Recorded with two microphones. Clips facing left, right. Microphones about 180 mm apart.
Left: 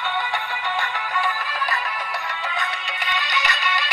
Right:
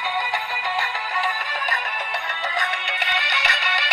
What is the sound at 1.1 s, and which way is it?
Music, 45° right (ahead or behind).